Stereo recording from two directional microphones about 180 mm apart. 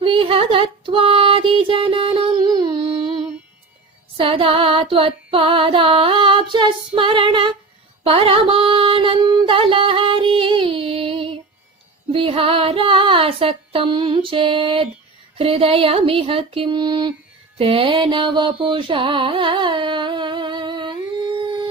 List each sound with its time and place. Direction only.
0.0 s a sound: 30° right (ahead or behind)
4.2 s mantra: 30° right (ahead or behind)
8.0 s music: 30° right (ahead or behind)
12.1 s mantra: 30° right (ahead or behind)
15.3 s a sound: 30° right (ahead or behind)
17.6 s mantra: 30° right (ahead or behind)